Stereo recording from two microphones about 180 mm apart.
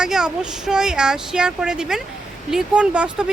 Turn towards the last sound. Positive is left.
turn(degrees=-5)  # may be behind; listen again after turning